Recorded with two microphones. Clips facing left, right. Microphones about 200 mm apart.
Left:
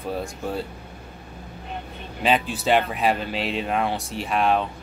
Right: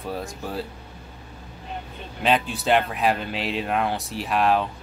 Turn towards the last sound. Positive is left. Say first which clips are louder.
# even
turn(degrees=0)  # may be behind; listen again after turning